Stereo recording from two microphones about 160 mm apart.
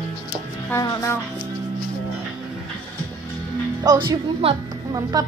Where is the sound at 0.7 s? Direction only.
15° left (ahead or behind).